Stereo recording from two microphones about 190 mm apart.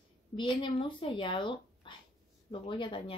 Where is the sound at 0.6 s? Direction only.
25° left (ahead or behind).